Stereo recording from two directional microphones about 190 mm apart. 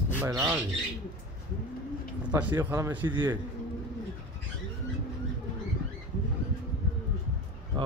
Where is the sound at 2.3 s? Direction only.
15° right (ahead or behind).